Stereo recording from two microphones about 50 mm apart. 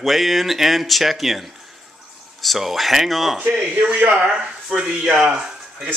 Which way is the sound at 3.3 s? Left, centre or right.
Right.